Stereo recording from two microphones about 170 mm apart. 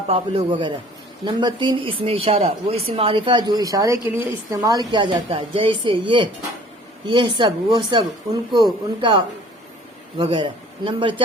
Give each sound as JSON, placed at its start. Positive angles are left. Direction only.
{"t": 0.1, "sound": "a man's voice", "side_deg": -35}